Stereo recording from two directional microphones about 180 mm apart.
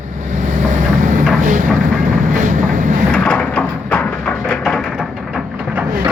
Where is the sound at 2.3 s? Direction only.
45° right (ahead or behind).